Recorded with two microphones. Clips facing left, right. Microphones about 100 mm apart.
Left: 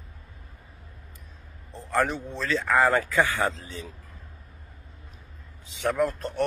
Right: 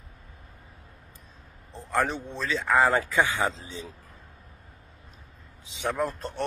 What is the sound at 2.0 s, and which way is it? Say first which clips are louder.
Speech: left 1 dB; 20° right (ahead or behind).